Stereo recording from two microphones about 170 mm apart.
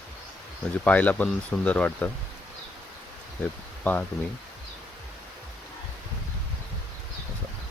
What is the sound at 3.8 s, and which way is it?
Speech, 10° left (ahead or behind).